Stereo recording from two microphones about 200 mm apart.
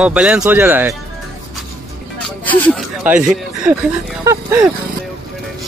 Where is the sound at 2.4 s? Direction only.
10° left (ahead or behind).